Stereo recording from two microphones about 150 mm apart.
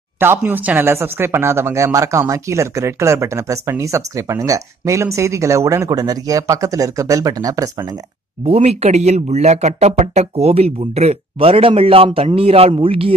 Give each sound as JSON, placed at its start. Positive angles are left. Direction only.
{"t": 0.2, "sound": "speech", "side_deg": -15}
{"t": 8.5, "sound": "speech", "side_deg": -40}